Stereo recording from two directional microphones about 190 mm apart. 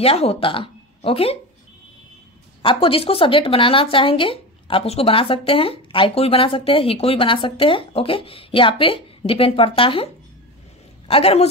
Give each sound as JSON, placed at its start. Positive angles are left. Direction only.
{"t": 0.0, "sound": "speech", "side_deg": 30}
{"t": 2.6, "sound": "speech", "side_deg": 25}